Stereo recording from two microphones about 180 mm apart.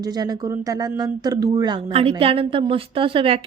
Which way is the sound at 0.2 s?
20° right (ahead or behind).